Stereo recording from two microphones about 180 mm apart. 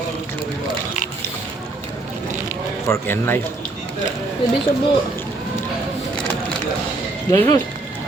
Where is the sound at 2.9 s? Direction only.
10° left (ahead or behind).